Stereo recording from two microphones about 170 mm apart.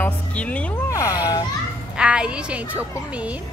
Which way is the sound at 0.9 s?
20° left (ahead or behind).